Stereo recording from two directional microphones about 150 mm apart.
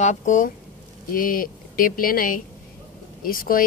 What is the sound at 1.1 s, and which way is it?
Speech, 70° left (ahead or behind).